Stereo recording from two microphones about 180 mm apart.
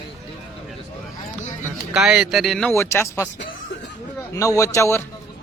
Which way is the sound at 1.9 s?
5° right (ahead or behind).